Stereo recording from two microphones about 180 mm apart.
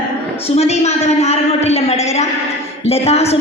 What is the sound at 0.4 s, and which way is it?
A woman's voice, 35° left (ahead or behind).